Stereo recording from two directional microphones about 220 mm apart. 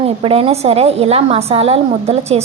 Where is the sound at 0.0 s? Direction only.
25° right (ahead or behind).